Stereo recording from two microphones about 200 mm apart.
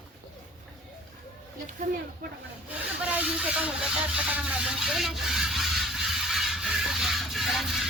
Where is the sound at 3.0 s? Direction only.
5° right (ahead or behind).